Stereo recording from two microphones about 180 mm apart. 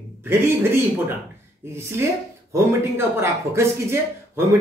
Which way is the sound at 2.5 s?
15° right (ahead or behind).